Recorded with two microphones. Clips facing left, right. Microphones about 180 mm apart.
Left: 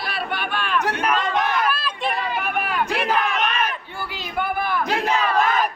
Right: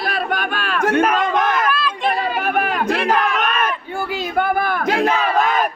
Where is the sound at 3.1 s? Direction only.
50° right (ahead or behind).